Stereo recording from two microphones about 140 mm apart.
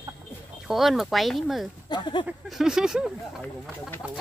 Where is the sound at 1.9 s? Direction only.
35° left (ahead or behind).